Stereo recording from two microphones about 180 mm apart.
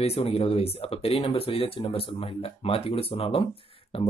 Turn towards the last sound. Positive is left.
turn(degrees=30)  # may be behind; listen again after turning